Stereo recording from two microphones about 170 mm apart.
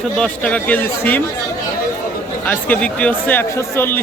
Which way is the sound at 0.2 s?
5° left (ahead or behind).